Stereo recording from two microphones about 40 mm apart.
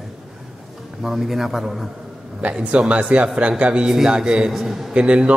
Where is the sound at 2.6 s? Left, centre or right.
Right.